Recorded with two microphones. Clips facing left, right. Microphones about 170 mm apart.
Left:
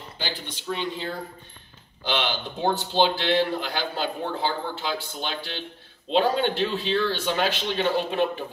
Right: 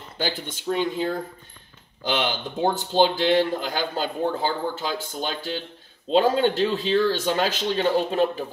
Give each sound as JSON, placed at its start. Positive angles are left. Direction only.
{"t": 0.2, "sound": "a man's voice", "side_deg": -50}
{"t": 2.0, "sound": "a man's voice", "side_deg": -45}